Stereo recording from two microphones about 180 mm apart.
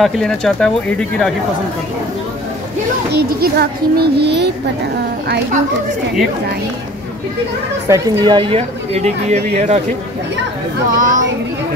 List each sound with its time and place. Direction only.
0.0 s speech: 5° left (ahead or behind)
3.1 s a child's voice: 60° right (ahead or behind)
7.9 s speech: 25° right (ahead or behind)
10.9 s a child's voice: 50° right (ahead or behind)